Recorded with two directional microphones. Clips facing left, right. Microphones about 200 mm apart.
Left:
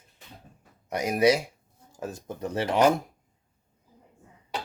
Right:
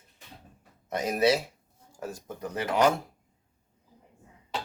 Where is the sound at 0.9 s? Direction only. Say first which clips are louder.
Left 2 dB; 10° left (ahead or behind).